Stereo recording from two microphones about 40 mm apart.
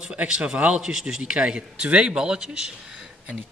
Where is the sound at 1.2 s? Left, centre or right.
Right.